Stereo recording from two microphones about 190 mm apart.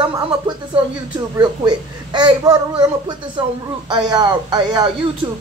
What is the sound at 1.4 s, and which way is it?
Speech, 25° right (ahead or behind).